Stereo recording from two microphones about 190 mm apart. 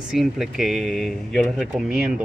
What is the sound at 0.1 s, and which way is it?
Speech, centre (ahead or behind).